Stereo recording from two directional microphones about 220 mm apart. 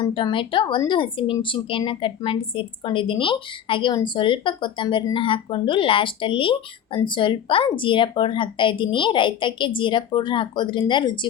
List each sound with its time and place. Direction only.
0.0 s speech: 20° left (ahead or behind)